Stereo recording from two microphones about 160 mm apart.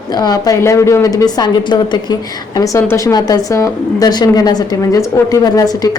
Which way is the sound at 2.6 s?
15° left (ahead or behind).